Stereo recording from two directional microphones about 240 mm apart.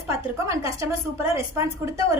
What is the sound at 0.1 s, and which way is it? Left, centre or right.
A woman's voice, centre.